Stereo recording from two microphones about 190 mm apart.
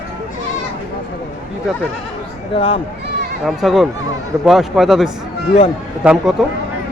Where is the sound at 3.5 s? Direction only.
Centre (ahead or behind).